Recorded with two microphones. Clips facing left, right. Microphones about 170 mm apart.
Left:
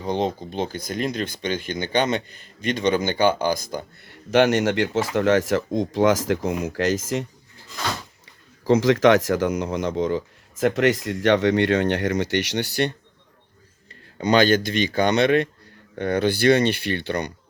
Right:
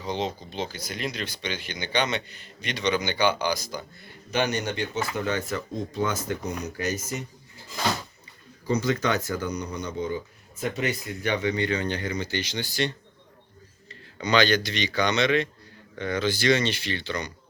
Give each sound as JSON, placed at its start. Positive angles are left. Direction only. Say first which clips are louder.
{"t": 0.0, "sound": "speech", "louder": "left 6 dB", "side_deg": 50}
{"t": 8.6, "sound": "speech", "louder": "left 9 dB", "side_deg": 90}
{"t": 14.2, "sound": "speech", "louder": "left 5 dB", "side_deg": 50}